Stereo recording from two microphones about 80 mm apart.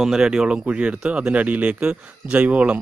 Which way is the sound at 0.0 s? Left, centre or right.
Centre.